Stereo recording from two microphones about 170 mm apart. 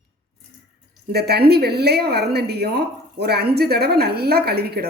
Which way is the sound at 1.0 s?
70° right (ahead or behind).